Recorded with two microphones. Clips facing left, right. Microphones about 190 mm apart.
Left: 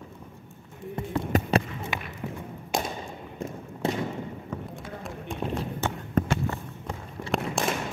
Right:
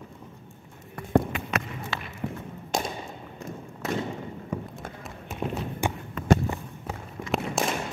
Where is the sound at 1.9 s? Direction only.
15° left (ahead or behind).